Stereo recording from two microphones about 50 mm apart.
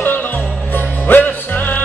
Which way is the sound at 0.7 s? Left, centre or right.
Left.